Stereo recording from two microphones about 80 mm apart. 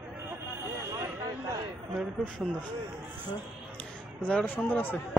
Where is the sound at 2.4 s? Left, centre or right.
Centre.